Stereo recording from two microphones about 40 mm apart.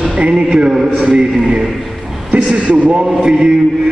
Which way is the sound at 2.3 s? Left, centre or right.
Right.